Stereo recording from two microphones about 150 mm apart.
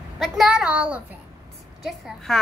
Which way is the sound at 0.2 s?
Centre (ahead or behind).